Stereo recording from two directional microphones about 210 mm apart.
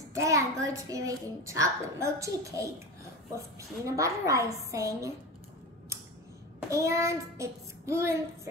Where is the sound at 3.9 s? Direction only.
15° right (ahead or behind).